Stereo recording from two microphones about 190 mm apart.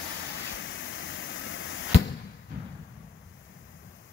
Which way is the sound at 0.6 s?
80° left.